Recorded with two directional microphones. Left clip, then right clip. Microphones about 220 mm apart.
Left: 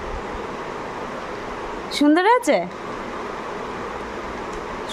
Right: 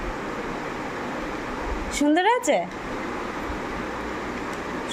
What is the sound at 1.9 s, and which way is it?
Speech, 20° left (ahead or behind).